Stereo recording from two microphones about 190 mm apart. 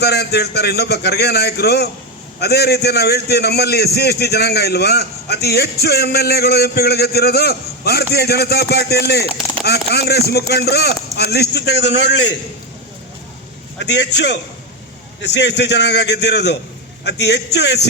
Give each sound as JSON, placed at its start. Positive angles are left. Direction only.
{"t": 0.0, "sound": "a man's voice", "side_deg": 60}
{"t": 13.8, "sound": "a man's voice", "side_deg": 65}